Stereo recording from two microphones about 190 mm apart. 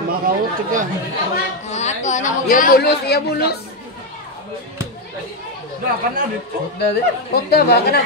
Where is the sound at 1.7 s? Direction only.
35° left (ahead or behind); by 3.6 s 55° left (ahead or behind).